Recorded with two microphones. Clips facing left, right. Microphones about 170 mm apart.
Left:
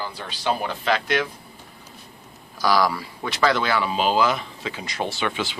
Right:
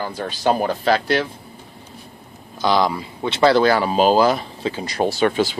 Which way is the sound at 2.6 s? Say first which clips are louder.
Right 2 dB; 25° right (ahead or behind).